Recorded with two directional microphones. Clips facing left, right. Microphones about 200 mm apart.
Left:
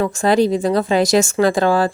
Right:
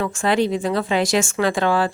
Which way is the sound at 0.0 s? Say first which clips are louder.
Left 4 dB; 40° left (ahead or behind).